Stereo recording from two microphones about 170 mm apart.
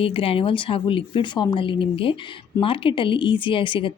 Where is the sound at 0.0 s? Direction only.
35° left (ahead or behind).